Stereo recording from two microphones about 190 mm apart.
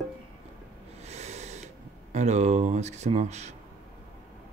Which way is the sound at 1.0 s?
35° right (ahead or behind).